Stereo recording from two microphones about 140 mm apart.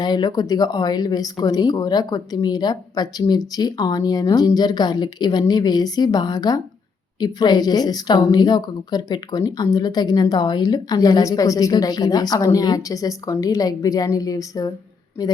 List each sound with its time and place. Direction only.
0.0 s speech: 30° left (ahead or behind)